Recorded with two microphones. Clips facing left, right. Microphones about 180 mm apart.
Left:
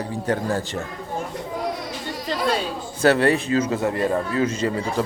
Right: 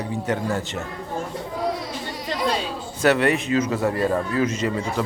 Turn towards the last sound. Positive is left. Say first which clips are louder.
# left 1 dB
turn(degrees=30)  # may be behind; listen again after turning